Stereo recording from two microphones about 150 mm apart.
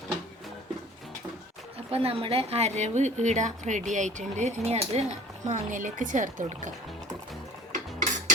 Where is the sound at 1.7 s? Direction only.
40° right (ahead or behind); by 6.7 s 60° right (ahead or behind).